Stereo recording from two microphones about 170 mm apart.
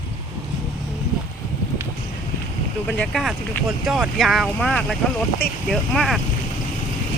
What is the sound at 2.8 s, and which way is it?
Speech, centre (ahead or behind).